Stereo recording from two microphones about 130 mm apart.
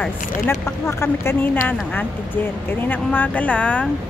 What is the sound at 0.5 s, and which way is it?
A woman's voice, 20° left (ahead or behind).